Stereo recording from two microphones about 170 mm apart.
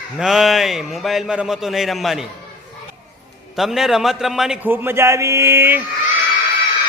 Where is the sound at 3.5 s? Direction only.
Centre (ahead or behind).